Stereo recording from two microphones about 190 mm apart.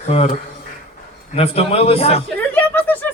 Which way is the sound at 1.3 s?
30° left (ahead or behind).